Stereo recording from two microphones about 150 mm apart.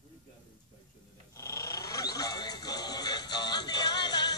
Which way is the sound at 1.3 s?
20° left (ahead or behind).